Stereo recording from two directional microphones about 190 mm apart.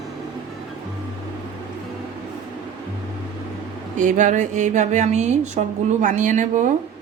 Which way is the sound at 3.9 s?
40° right (ahead or behind).